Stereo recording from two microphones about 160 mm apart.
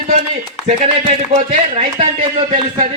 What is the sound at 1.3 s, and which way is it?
Speech, 45° right (ahead or behind).